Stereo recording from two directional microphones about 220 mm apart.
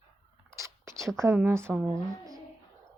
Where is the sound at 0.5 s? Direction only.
15° right (ahead or behind).